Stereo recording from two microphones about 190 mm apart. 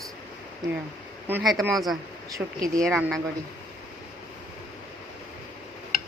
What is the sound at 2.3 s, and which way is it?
Speech, 15° right (ahead or behind).